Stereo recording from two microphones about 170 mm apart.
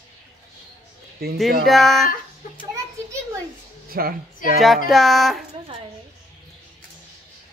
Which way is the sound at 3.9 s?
60° right (ahead or behind).